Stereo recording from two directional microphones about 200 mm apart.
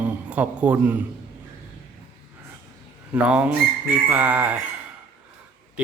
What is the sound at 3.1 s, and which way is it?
Speech, 5° right (ahead or behind).